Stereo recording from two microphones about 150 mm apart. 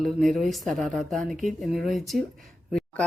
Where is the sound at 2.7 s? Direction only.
5° left (ahead or behind).